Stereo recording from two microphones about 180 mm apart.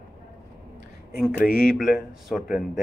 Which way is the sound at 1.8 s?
Centre (ahead or behind).